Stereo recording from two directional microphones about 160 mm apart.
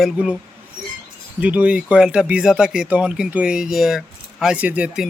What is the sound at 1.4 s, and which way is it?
Speech, 10° right (ahead or behind).